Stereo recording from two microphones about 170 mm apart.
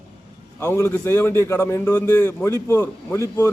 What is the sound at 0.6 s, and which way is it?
A man's voice, 15° left (ahead or behind).